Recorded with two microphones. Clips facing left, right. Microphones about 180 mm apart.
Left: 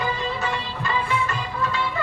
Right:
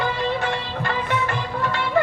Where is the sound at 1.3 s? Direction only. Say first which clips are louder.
Right 2 dB; 60° right (ahead or behind).